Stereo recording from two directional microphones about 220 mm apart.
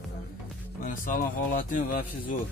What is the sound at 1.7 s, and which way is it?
Speech, 40° left (ahead or behind).